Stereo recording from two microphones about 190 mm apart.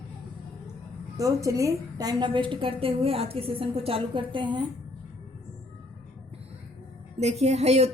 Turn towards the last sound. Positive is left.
turn(degrees=-35)  # may be behind; listen again after turning